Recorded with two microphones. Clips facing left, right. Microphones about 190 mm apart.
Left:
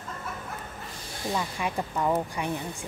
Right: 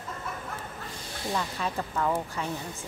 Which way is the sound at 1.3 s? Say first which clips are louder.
Left 1 dB; 10° left (ahead or behind).